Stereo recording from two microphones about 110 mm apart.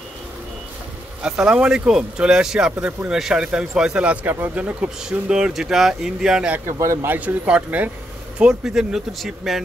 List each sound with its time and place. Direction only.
1.2 s speech: 10° right (ahead or behind)
6.8 s speech: 25° right (ahead or behind)
7.2 s speech: 10° right (ahead or behind)